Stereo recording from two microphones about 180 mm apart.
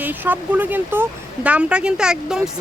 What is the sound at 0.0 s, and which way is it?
A woman's voice, 10° right (ahead or behind).